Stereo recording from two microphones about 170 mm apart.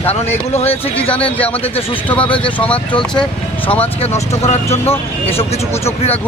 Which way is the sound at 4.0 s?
40° left (ahead or behind).